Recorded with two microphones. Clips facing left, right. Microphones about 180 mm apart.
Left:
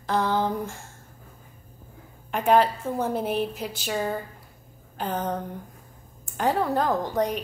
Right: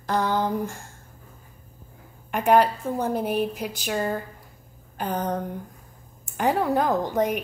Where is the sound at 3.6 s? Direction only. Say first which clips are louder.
Right 1 dB; centre (ahead or behind).